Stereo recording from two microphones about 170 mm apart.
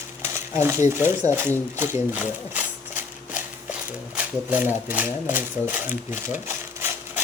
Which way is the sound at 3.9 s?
10° right (ahead or behind).